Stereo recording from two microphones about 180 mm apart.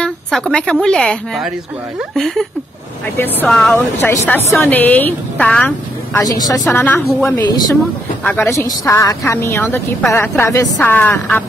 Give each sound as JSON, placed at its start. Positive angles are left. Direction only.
{"t": 0.0, "sound": "a woman's voice", "side_deg": 5}
{"t": 6.1, "sound": "speech", "side_deg": 20}
{"t": 6.7, "sound": "a woman's voice", "side_deg": 10}